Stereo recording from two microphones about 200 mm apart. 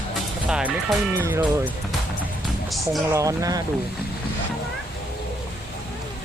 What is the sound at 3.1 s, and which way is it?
Speech, 15° right (ahead or behind).